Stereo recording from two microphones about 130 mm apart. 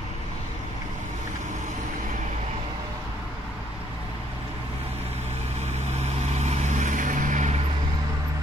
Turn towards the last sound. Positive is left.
turn(degrees=-65)  # may be behind; listen again after turning